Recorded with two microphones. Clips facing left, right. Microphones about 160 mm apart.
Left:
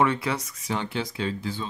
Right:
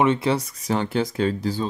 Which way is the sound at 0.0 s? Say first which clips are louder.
Right 4 dB; 25° right (ahead or behind).